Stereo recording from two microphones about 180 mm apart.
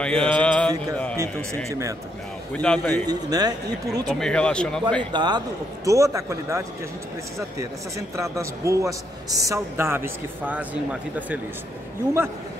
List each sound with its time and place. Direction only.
0.0 s mantra: 5° left (ahead or behind)
1.1 s a man's voice: 15° right (ahead or behind)
2.5 s a man's voice: 5° left (ahead or behind)
3.1 s speech: 20° right (ahead or behind)
4.1 s speech: 5° left (ahead or behind)
5.1 s a man's voice: 25° right (ahead or behind)
8.2 s a man's voice: 15° right (ahead or behind)